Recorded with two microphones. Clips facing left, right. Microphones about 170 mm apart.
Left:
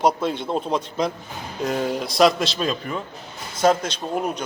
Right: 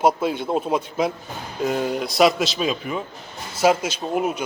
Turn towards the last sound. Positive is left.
turn(degrees=-5)  # may be behind; listen again after turning